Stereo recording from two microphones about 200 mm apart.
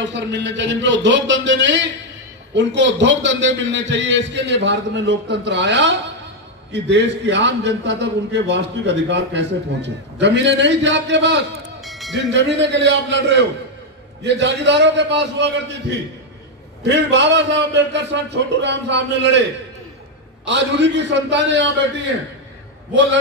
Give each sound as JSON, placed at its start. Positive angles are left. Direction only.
{"t": 0.0, "sound": "a man's voice", "side_deg": -65}
{"t": 11.8, "sound": "a sound", "side_deg": 0}
{"t": 12.1, "sound": "a man's voice", "side_deg": -60}
{"t": 16.8, "sound": "a man's voice", "side_deg": -60}
{"t": 20.4, "sound": "a man's voice", "side_deg": -65}